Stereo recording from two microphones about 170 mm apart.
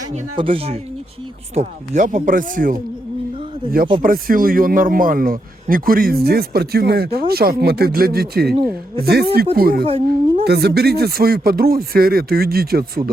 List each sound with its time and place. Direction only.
0.1 s speech: 30° right (ahead or behind)
1.5 s speech: 45° right (ahead or behind)
4.0 s speech: 55° right (ahead or behind)